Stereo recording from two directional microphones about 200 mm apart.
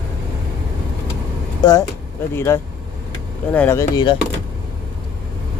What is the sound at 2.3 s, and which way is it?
A man's voice, 15° left (ahead or behind).